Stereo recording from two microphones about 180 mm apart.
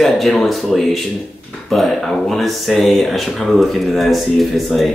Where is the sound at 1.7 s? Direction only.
Centre (ahead or behind).